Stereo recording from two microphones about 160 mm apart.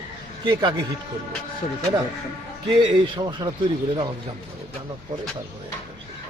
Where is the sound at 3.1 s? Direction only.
25° right (ahead or behind).